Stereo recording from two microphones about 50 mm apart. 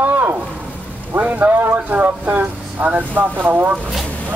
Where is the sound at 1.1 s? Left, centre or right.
Right.